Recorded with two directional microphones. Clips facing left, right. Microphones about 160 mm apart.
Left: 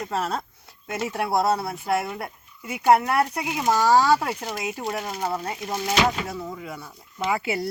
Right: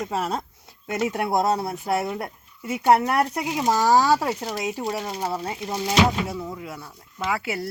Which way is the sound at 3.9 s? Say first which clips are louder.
Even; 10° right (ahead or behind).